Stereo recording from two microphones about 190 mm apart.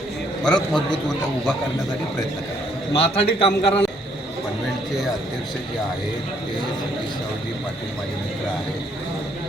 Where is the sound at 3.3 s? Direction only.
30° left (ahead or behind).